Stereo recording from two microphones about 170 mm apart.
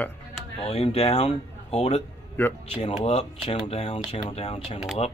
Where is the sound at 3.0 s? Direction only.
35° left (ahead or behind).